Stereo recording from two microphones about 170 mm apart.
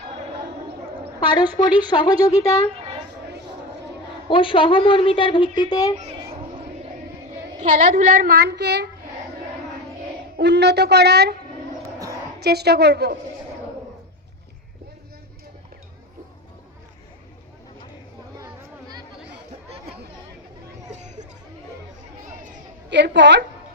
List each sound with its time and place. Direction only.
1.6 s a woman's voice: 25° left (ahead or behind)
4.3 s a woman's voice: 30° left (ahead or behind)
7.6 s a child's voice: 45° right (ahead or behind); by 8.9 s 85° right
10.3 s a child's voice: 80° right
11.9 s a sound: 20° right (ahead or behind)
12.4 s a child's voice: 70° right (ahead or behind)
18.3 s a sound: 20° right (ahead or behind)
22.9 s a woman's voice: 90° right